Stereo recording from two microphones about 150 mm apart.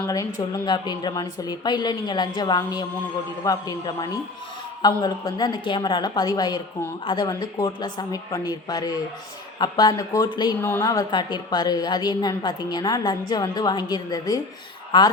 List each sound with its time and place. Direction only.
0.1 s a woman's voice: 25° left (ahead or behind)
10.6 s a woman's voice: 10° left (ahead or behind)
10.8 s a woman's voice: 25° left (ahead or behind)